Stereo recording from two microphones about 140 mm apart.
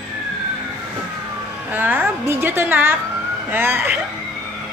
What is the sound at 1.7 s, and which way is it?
A woman's voice, 15° right (ahead or behind).